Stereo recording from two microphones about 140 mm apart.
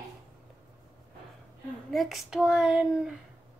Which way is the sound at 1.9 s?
Centre (ahead or behind).